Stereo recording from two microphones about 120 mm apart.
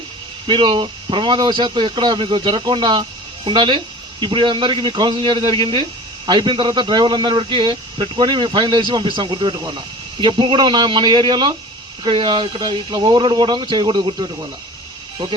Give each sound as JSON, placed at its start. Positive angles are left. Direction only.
{"t": 0.4, "sound": "speech", "side_deg": -40}